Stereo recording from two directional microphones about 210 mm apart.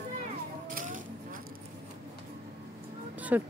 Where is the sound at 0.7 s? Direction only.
40° right (ahead or behind).